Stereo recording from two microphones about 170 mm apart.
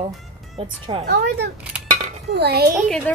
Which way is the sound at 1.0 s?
75° right (ahead or behind).